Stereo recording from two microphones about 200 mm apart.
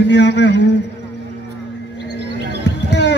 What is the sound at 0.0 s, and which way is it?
Speech, 60° left (ahead or behind).